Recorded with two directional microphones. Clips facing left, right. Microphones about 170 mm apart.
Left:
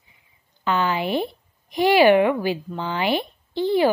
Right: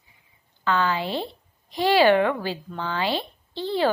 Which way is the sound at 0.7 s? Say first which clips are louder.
Left 2 dB; 15° left (ahead or behind).